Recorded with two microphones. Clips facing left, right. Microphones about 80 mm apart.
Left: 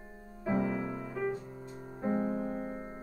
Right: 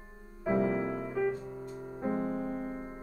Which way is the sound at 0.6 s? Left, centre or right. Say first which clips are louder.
Right 4 dB; right.